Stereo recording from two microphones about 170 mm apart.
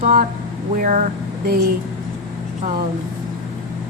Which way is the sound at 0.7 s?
50° right (ahead or behind).